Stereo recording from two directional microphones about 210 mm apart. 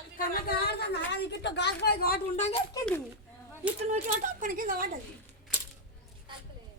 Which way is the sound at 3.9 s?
40° right (ahead or behind).